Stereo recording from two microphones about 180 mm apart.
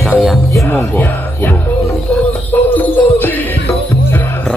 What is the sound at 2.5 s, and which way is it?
Jingle bell, 10° left (ahead or behind).